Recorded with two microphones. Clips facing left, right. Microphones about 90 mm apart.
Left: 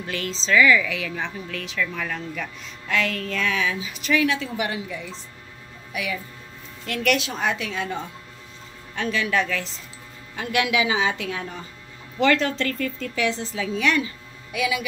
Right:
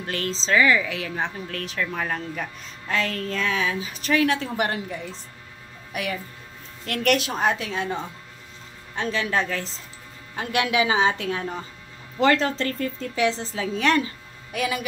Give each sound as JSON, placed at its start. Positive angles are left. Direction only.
{"t": 0.0, "sound": "a woman's voice", "side_deg": -40}
{"t": 1.5, "sound": "a woman's voice", "side_deg": -40}
{"t": 6.9, "sound": "a woman's voice", "side_deg": -40}